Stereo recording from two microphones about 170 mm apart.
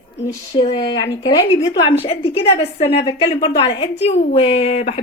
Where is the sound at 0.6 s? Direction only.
25° left (ahead or behind).